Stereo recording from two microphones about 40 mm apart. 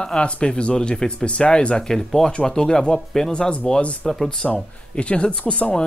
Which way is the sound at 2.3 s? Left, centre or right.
Left.